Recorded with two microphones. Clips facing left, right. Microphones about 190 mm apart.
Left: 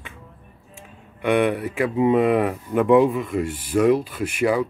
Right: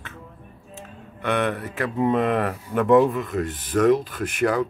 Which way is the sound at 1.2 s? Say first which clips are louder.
Left 4 dB; 10° left (ahead or behind).